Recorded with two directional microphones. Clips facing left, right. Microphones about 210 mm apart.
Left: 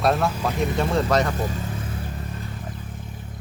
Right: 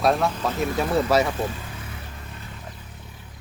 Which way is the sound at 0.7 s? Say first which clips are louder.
Right 2 dB; 5° right (ahead or behind).